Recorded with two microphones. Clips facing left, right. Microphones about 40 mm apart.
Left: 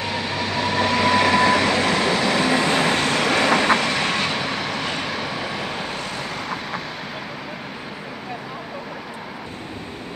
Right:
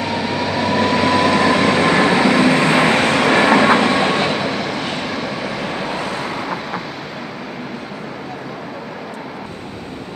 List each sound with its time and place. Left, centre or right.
0.0 s train: centre
1.6 s train: right
2.3 s vehicle: centre
2.8 s vehicle: right
3.2 s vehicle: right; by 5.9 s centre
5.9 s vehicle: centre